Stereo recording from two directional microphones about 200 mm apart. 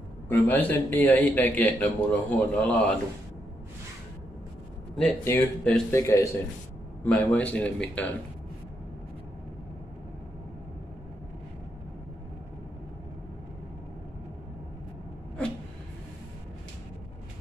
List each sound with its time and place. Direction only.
0.3 s a man's voice: 10° left (ahead or behind)
4.9 s a man's voice: 5° left (ahead or behind)